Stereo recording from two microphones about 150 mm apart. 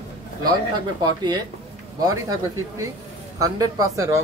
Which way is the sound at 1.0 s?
30° right (ahead or behind).